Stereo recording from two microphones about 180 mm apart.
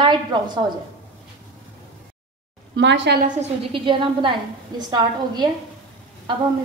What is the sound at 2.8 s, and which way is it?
Speech, 80° right.